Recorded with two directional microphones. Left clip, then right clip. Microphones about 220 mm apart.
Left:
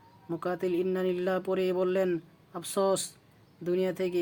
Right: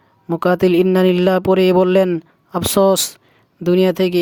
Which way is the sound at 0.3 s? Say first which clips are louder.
Right 16 dB; 45° right (ahead or behind).